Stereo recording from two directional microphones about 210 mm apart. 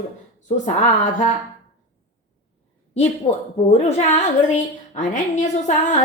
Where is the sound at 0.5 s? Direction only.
35° left (ahead or behind).